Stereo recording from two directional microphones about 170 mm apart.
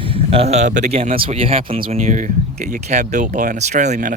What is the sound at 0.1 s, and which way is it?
Speech, 35° right (ahead or behind).